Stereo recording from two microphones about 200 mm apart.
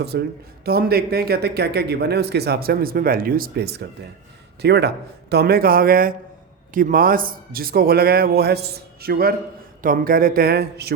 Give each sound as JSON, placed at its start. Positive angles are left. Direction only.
{"t": 0.0, "sound": "a man's voice", "side_deg": -55}